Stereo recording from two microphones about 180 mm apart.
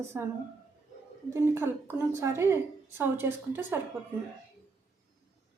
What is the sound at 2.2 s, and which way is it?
A woman's voice, 15° right (ahead or behind).